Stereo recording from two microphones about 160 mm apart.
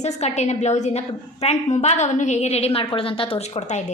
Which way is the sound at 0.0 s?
45° left (ahead or behind).